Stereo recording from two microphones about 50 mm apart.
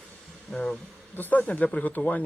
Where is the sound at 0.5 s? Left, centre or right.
Left.